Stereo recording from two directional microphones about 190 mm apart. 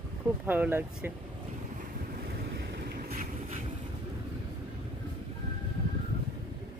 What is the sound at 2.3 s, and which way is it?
Boat, 60° right (ahead or behind).